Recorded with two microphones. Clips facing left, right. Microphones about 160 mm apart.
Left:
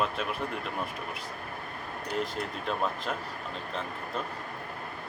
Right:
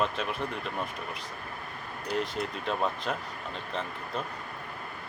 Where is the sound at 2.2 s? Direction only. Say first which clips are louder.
Left 1 dB; centre (ahead or behind).